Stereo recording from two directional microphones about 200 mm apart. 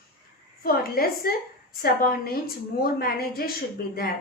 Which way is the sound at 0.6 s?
50° left (ahead or behind).